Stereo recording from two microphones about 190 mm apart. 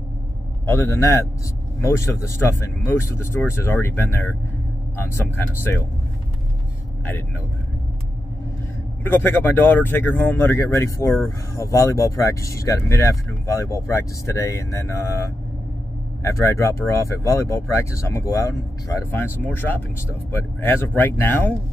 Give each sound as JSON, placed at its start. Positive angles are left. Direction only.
{"t": 0.7, "sound": "speech", "side_deg": 15}
{"t": 9.0, "sound": "speech", "side_deg": 10}